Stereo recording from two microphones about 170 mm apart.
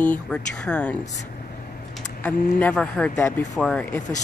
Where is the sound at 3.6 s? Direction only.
10° left (ahead or behind).